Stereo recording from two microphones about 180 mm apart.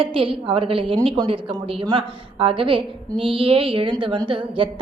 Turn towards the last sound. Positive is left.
turn(degrees=-30)  # may be behind; listen again after turning